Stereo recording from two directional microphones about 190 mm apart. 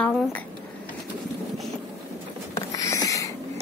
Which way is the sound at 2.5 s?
15° left (ahead or behind).